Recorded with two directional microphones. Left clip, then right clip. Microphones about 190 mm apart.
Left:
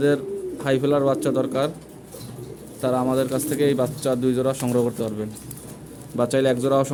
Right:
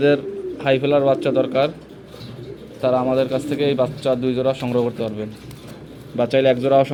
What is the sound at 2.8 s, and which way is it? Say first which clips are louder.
Speech: right 4 dB; 25° left (ahead or behind).